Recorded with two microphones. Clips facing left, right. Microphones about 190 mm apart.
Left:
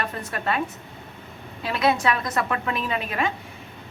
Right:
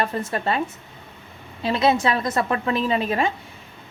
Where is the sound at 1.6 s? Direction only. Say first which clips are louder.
Right 3 dB; 25° right (ahead or behind).